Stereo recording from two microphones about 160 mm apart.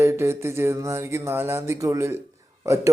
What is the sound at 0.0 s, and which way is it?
A man's voice, 15° right (ahead or behind).